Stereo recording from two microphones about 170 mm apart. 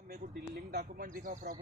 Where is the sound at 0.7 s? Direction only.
65° right (ahead or behind).